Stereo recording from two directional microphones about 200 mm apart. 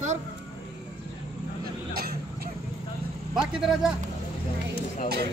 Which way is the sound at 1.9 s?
50° right (ahead or behind).